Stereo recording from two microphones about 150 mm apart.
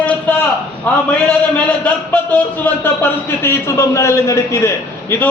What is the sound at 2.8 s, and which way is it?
A man's voice, 15° left (ahead or behind).